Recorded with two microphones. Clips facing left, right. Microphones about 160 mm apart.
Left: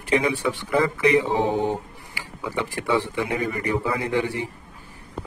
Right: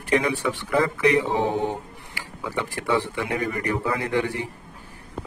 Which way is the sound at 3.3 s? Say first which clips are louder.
Even; centre (ahead or behind).